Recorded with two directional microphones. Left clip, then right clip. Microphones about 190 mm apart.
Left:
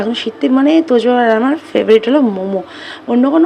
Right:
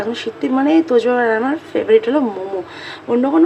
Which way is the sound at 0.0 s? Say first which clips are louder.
Left 4 dB; 30° left (ahead or behind).